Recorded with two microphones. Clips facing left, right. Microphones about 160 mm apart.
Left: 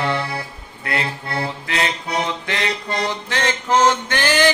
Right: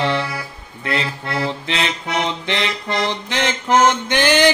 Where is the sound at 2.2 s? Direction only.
20° right (ahead or behind).